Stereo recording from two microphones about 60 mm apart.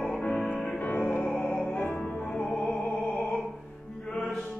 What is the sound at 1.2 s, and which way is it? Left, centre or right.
Music, centre.